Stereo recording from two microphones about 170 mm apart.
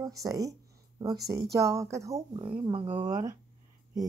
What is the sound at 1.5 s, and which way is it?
Speech, 20° right (ahead or behind).